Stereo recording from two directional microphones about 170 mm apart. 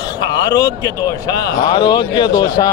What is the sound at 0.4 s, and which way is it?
Speech, 20° left (ahead or behind).